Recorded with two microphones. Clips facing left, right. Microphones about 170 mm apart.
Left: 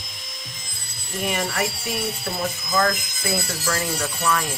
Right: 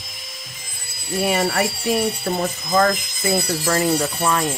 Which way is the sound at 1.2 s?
40° right (ahead or behind).